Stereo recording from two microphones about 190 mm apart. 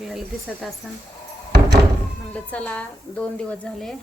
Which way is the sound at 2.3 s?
5° left (ahead or behind).